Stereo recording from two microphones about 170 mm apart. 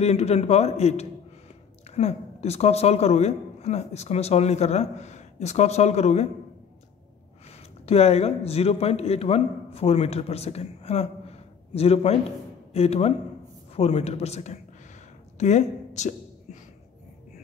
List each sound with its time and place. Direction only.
0.0 s a woman's voice: 40° left (ahead or behind)
7.4 s a man's voice: 40° left (ahead or behind)